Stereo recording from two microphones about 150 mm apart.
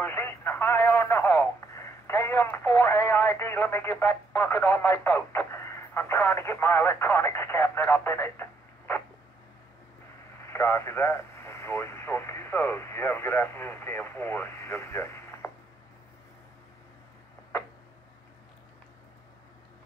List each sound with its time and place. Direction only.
0.0 s telephone: 15° left (ahead or behind)
10.5 s speech: 20° left (ahead or behind)